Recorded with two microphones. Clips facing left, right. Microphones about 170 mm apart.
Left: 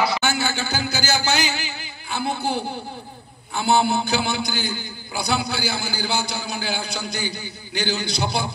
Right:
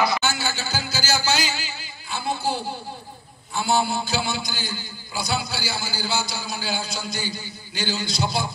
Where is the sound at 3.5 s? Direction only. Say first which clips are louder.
Left 3 dB; 60° left (ahead or behind).